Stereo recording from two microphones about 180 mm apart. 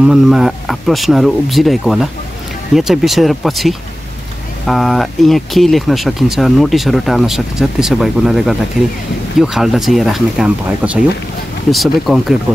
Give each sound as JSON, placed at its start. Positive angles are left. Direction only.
{"t": 0.0, "sound": "speech", "side_deg": -5}